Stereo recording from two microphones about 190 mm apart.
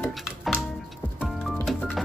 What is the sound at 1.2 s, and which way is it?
Music, 5° left (ahead or behind).